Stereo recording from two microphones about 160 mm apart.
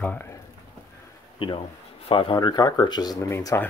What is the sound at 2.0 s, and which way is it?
Speech, 30° left (ahead or behind).